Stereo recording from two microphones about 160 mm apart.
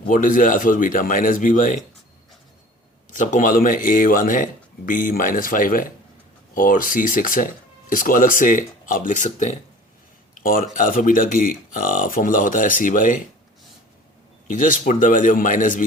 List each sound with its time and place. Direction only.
0.0 s speech: 55° left (ahead or behind)
3.1 s speech: 55° left (ahead or behind)
10.4 s speech: 60° left (ahead or behind)
14.4 s speech: 55° left (ahead or behind)